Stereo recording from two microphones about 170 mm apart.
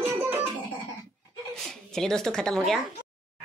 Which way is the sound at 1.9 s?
5° left (ahead or behind).